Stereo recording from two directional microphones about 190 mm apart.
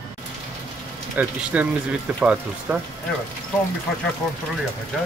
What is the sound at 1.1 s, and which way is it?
Speech, 10° right (ahead or behind).